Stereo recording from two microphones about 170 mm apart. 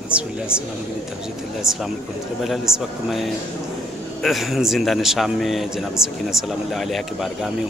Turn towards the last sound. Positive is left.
turn(degrees=0)  # may be behind; listen again after turning